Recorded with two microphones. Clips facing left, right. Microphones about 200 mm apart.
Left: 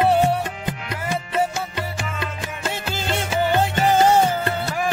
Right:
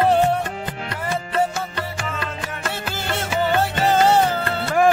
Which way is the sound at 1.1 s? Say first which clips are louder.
Right 1 dB; 15° left (ahead or behind).